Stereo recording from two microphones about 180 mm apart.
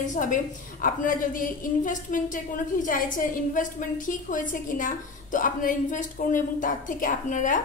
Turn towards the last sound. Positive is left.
turn(degrees=45)  # may be behind; listen again after turning